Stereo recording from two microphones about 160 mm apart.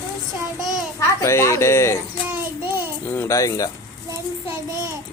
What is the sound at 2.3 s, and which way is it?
Child singing, 15° right (ahead or behind).